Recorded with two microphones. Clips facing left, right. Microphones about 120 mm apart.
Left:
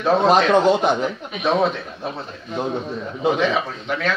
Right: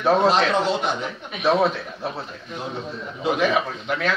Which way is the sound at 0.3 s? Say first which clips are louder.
Left 5 dB; 50° left (ahead or behind).